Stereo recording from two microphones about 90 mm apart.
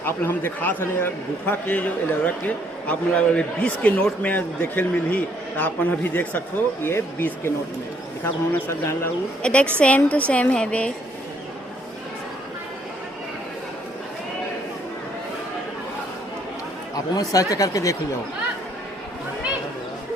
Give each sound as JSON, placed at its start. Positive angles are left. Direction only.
{"t": 0.0, "sound": "a man's voice", "side_deg": 25}
{"t": 9.4, "sound": "a man's voice", "side_deg": 15}
{"t": 17.2, "sound": "speech", "side_deg": 40}